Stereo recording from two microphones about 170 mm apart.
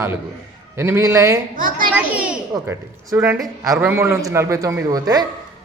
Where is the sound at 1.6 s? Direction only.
55° right (ahead or behind).